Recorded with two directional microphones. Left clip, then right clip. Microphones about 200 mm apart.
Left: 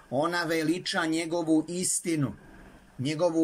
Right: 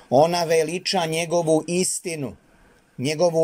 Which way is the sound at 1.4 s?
55° right (ahead or behind).